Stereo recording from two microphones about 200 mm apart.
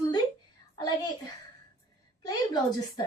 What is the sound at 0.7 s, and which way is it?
Speech, 20° left (ahead or behind).